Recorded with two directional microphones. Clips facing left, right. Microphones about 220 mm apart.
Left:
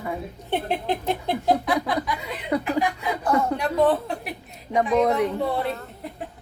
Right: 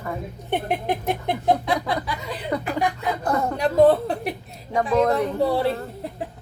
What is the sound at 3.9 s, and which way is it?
Speech, 35° right (ahead or behind).